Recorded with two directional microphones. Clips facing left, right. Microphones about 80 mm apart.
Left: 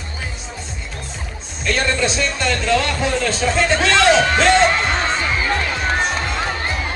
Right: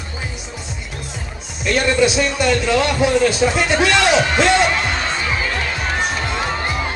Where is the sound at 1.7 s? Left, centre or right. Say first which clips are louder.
Right 4 dB; centre.